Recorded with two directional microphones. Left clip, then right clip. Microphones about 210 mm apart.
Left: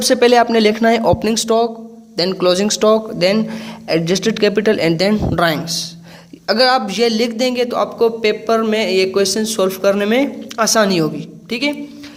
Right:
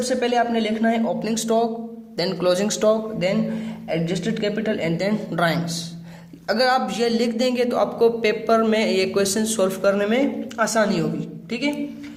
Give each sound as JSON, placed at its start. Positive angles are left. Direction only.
{"t": 0.0, "sound": "speech", "side_deg": 50}
{"t": 1.3, "sound": "a man's voice", "side_deg": 30}